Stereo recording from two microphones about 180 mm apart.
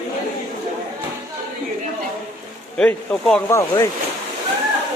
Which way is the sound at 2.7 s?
5° left (ahead or behind).